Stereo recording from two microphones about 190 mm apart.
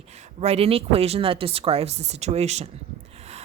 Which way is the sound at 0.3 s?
30° right (ahead or behind).